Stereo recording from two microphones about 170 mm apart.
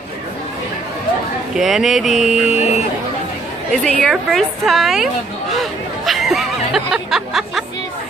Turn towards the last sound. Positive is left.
turn(degrees=0)  # may be behind; listen again after turning